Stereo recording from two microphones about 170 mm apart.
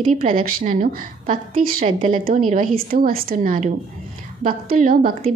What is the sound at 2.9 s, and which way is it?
A woman's voice, 60° right (ahead or behind).